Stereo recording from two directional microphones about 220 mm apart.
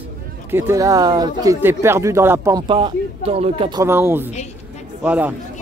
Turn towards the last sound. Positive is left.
turn(degrees=-5)  # may be behind; listen again after turning